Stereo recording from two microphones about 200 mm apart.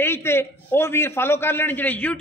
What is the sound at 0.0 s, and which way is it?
A man's voice, 10° left (ahead or behind).